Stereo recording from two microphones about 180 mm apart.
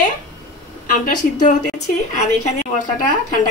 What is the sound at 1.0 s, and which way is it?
A woman's voice, 45° left (ahead or behind).